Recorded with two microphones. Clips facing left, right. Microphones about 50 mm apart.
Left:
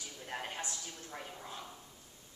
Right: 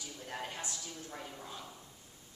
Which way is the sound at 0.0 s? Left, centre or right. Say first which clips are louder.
Even; centre.